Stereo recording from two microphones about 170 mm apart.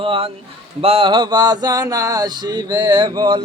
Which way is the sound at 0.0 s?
30° right (ahead or behind).